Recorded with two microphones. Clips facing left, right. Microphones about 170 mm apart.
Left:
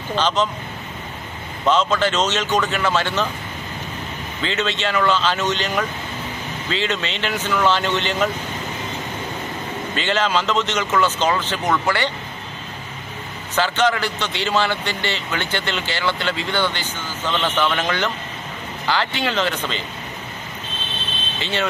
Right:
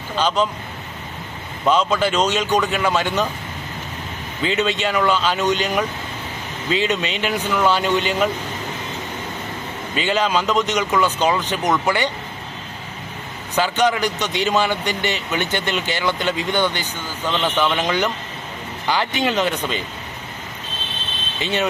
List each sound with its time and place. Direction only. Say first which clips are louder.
0.2 s a man's voice: right 1 dB; 10° right (ahead or behind)
1.7 s a man's voice: even; 10° right (ahead or behind)
4.4 s a man's voice: right 3 dB; 15° right (ahead or behind)
9.9 s a man's voice: right 1 dB; 10° right (ahead or behind)
13.6 s a man's voice: right 1 dB; 15° right (ahead or behind)
21.4 s speech: right 2 dB; 15° right (ahead or behind)